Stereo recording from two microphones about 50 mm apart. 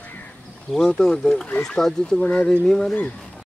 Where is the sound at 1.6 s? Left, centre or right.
Centre.